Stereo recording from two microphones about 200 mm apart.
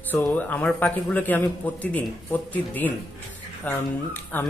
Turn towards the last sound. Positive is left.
turn(degrees=10)  # may be behind; listen again after turning